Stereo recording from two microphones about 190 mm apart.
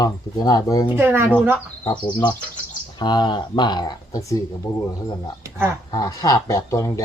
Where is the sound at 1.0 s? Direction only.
10° right (ahead or behind).